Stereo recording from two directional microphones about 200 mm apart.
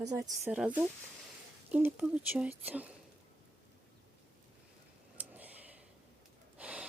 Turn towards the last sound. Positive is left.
turn(degrees=-5)  # may be behind; listen again after turning